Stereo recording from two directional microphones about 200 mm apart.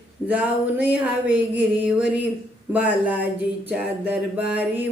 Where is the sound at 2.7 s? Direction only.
5° right (ahead or behind).